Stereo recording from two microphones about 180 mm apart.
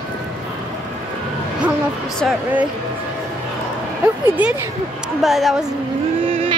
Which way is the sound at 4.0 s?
10° right (ahead or behind).